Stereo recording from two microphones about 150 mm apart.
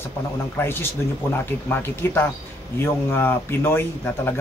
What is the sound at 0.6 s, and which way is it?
Speech, 15° left (ahead or behind).